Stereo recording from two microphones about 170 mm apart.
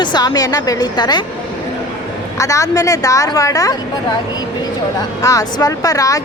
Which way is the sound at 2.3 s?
20° left (ahead or behind).